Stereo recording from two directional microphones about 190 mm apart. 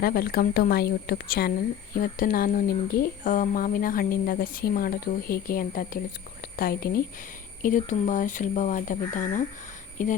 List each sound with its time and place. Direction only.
0.0 s speech: 50° left (ahead or behind)